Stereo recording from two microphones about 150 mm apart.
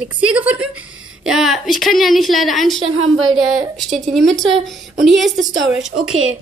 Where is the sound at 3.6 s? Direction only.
50° right (ahead or behind).